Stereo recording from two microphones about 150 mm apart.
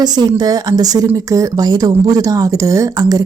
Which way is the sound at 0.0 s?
25° right (ahead or behind).